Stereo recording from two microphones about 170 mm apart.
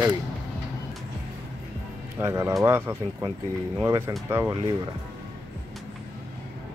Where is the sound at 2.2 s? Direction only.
15° right (ahead or behind).